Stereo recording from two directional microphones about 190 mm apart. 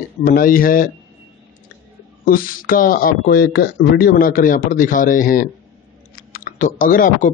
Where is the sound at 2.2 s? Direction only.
50° left (ahead or behind).